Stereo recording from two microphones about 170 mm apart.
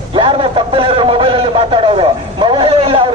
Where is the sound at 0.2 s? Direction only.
30° right (ahead or behind).